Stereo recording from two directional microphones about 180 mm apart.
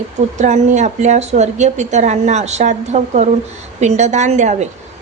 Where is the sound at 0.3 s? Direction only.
40° right (ahead or behind).